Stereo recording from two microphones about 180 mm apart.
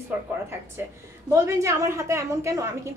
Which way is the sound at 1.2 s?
15° right (ahead or behind).